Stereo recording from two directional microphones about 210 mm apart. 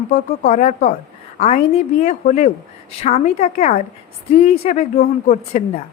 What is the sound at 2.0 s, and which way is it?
A woman's voice, 35° left (ahead or behind).